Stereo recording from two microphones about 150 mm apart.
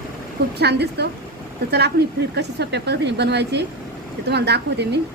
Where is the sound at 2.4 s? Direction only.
90° right.